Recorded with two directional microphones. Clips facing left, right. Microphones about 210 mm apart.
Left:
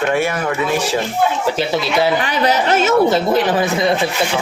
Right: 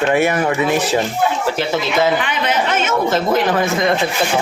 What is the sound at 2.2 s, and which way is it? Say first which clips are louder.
Speech: left 3 dB; 40° left (ahead or behind).